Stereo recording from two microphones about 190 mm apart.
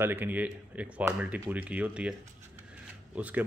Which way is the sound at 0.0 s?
10° right (ahead or behind).